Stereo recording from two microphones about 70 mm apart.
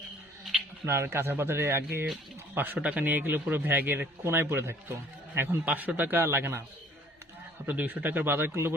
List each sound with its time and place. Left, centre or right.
0.9 s speech: right
2.7 s speech: centre
7.7 s speech: right